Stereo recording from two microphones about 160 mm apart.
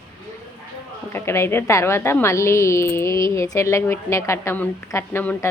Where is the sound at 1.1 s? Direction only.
15° left (ahead or behind).